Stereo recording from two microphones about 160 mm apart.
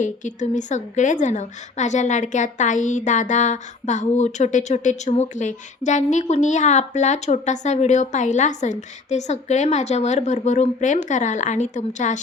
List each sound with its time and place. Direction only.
0.0 s a woman's voice: 50° left (ahead or behind)